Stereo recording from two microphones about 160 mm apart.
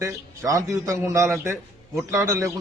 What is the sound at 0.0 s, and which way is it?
A man's voice, 20° right (ahead or behind).